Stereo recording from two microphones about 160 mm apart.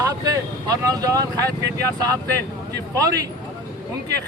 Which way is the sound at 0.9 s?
25° right (ahead or behind).